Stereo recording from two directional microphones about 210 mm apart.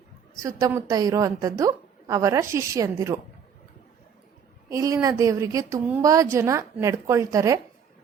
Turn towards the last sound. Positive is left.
turn(degrees=-15)  # may be behind; listen again after turning